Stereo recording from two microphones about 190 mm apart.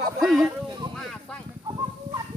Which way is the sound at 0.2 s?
Centre (ahead or behind).